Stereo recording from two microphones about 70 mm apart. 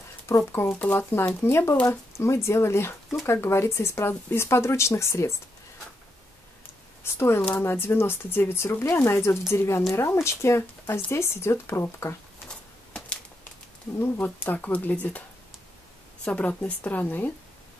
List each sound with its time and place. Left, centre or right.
0.5 s speech: left
1.4 s speech: left
7.0 s speech: left
12.4 s a sound: centre
13.9 s speech: left
16.3 s speech: left